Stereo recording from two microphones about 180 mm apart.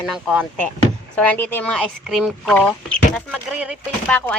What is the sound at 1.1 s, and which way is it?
Speech, 10° left (ahead or behind).